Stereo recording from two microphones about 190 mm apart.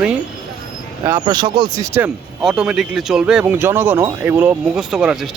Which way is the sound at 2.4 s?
5° right (ahead or behind).